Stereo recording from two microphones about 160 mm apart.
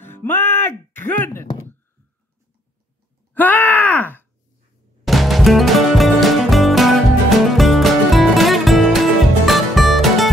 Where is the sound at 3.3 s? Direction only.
10° left (ahead or behind).